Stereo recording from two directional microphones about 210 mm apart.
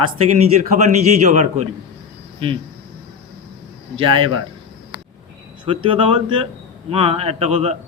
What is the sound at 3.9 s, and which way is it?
Speech, 25° right (ahead or behind).